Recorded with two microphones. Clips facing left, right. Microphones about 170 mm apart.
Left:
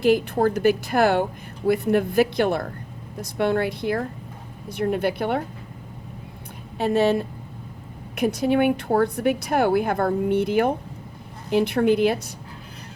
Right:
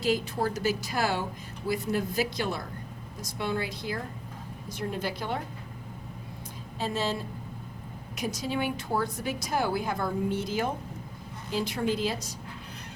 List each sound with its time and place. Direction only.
0.0 s a woman's voice: 55° left (ahead or behind)
6.7 s a woman's voice: 60° left (ahead or behind)